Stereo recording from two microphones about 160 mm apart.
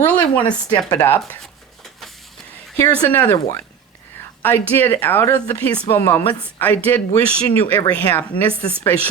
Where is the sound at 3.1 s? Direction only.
15° left (ahead or behind).